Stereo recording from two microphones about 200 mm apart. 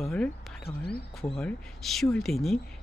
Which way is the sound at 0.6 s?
50° left (ahead or behind).